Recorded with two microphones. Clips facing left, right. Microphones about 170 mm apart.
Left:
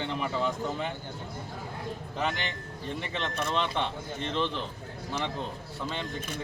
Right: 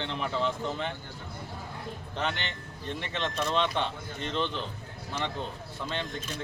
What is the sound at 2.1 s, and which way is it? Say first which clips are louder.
Speech: left 1 dB; 5° left (ahead or behind).